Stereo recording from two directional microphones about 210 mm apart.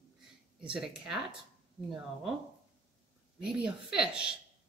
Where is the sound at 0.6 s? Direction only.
5° right (ahead or behind).